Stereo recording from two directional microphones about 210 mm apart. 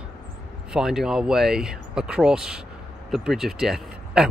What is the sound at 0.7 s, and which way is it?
Speech, centre (ahead or behind).